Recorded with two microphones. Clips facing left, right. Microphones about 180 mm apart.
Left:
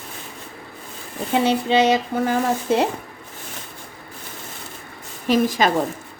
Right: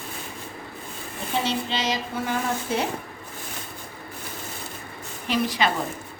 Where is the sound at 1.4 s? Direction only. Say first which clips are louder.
Left 10 dB; 55° left (ahead or behind).